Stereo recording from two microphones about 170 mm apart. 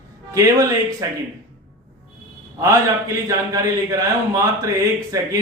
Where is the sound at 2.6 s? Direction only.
20° right (ahead or behind).